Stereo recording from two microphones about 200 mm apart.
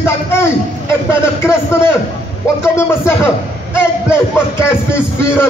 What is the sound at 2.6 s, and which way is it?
A man's voice, 15° left (ahead or behind).